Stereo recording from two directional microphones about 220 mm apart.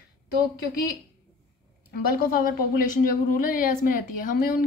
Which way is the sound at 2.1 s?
40° left (ahead or behind).